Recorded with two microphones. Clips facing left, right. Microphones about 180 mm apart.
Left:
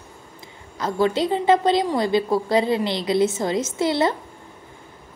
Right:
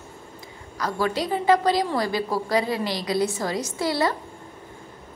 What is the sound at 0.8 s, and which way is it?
A woman's voice, 25° left (ahead or behind).